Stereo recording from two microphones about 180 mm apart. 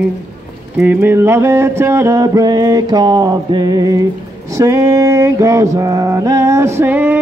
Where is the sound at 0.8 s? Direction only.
10° right (ahead or behind).